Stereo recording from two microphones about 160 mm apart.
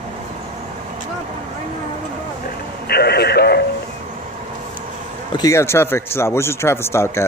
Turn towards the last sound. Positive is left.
turn(degrees=15)  # may be behind; listen again after turning